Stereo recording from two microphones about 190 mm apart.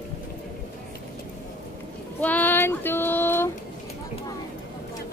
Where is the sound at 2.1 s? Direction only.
10° left (ahead or behind).